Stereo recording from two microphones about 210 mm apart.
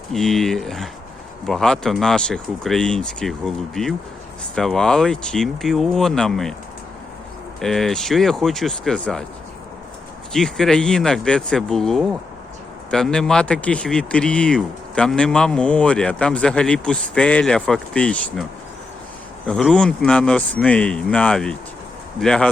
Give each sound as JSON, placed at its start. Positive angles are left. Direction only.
{"t": 0.1, "sound": "speech", "side_deg": 0}
{"t": 7.6, "sound": "speech", "side_deg": 0}
{"t": 10.3, "sound": "speech", "side_deg": 5}
{"t": 19.5, "sound": "speech", "side_deg": 5}